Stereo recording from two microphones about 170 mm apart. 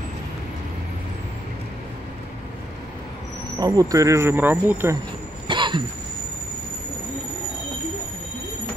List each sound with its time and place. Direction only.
3.5 s speech: 20° right (ahead or behind)
5.5 s cough: 30° right (ahead or behind)